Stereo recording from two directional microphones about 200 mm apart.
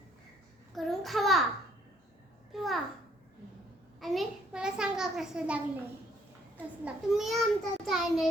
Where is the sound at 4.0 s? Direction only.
Centre (ahead or behind).